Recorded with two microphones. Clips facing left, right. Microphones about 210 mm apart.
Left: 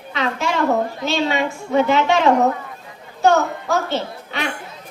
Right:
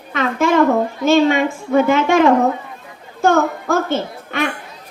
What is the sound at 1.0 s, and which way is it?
A woman's voice, 50° right (ahead or behind).